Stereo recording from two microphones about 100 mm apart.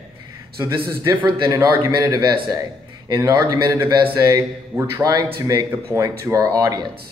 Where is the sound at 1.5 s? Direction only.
35° right (ahead or behind).